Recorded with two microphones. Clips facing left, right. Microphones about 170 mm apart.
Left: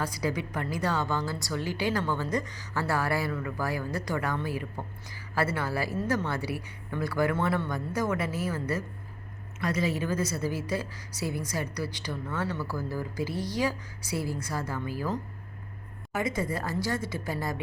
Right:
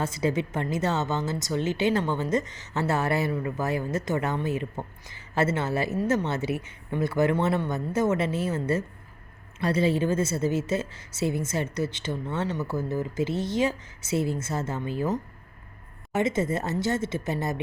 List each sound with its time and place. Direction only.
0.0 s a woman's voice: 25° right (ahead or behind)